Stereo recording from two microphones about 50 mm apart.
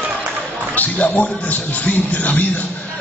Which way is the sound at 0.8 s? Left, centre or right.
Left.